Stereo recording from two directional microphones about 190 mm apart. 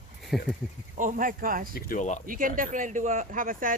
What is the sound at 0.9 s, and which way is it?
Speech, 45° right (ahead or behind).